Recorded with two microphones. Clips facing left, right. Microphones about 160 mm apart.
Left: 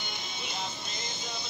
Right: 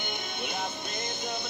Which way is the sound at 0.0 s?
55° right (ahead or behind).